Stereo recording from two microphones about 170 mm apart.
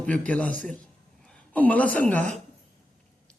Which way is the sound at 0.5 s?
50° right (ahead or behind).